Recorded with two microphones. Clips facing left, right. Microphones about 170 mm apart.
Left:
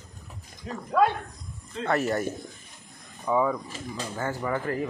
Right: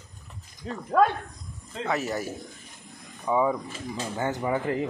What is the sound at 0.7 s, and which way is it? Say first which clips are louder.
Speech: right 1 dB; 30° right (ahead or behind).